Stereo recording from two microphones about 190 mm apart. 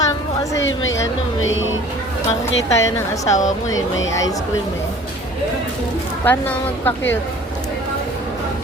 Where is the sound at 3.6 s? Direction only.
90° left.